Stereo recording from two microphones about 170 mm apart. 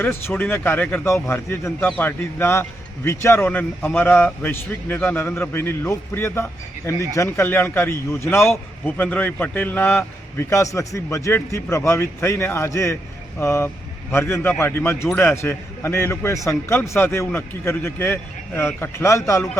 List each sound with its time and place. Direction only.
0.0 s a man's voice: 15° left (ahead or behind)